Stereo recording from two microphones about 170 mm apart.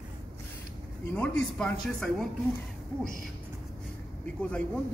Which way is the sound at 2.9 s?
20° left (ahead or behind).